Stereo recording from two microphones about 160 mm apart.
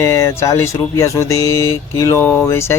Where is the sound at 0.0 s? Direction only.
20° left (ahead or behind).